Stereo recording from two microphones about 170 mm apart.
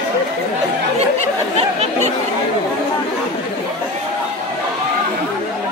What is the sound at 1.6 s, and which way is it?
Chatter, 40° right (ahead or behind).